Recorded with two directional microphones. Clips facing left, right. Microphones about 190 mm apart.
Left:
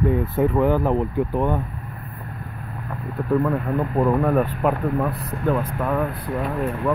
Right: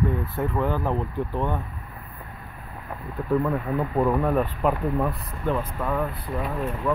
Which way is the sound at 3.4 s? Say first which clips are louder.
Left 3 dB; centre (ahead or behind).